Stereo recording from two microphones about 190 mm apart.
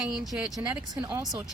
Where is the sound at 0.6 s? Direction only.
20° right (ahead or behind).